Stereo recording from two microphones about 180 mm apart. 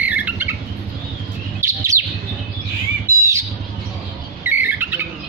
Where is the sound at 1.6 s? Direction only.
15° right (ahead or behind).